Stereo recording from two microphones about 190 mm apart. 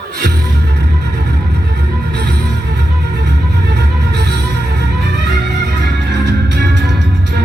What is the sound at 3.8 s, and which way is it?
Music, 60° right (ahead or behind).